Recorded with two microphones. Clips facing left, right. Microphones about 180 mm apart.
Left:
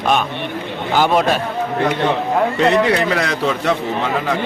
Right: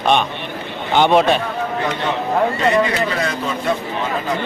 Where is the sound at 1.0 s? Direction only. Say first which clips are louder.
Right 2 dB; centre (ahead or behind).